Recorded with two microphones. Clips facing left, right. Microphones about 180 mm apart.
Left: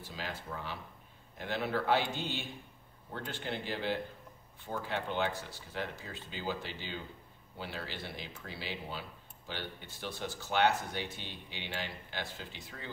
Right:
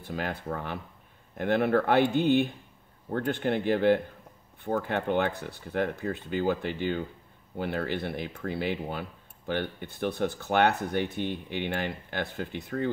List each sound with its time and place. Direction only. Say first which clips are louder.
0.0 s speech: right 9 dB; 55° right (ahead or behind)